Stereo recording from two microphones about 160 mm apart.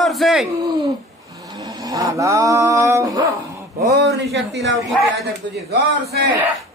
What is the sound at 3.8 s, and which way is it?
Speech, 90° right.